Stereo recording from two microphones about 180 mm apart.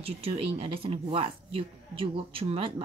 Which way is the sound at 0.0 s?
35° right (ahead or behind).